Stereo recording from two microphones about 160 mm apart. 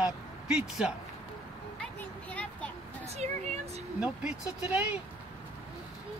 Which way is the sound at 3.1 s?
45° right (ahead or behind).